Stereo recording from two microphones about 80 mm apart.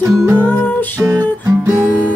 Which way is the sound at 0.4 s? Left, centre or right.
Left.